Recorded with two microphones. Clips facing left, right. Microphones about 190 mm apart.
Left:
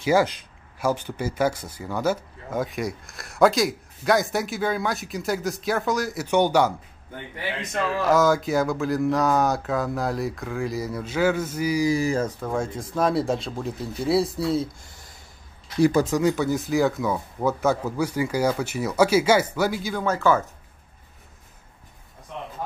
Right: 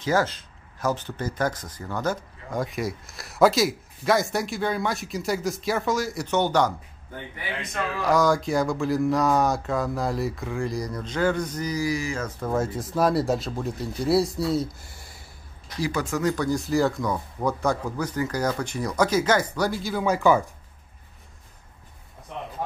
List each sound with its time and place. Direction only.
0.0 s speech: 10° left (ahead or behind)
6.2 s speech: 10° left (ahead or behind)
8.0 s speech: centre (ahead or behind)
11.8 s speech: 30° left (ahead or behind)
12.4 s speech: 5° right (ahead or behind)
16.1 s speech: 10° left (ahead or behind); by 20.4 s 15° right (ahead or behind)